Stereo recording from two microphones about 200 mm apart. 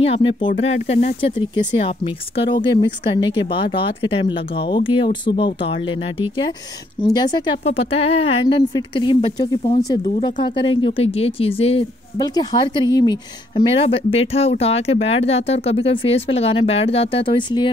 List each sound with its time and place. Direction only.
0.0 s speech: 30° left (ahead or behind)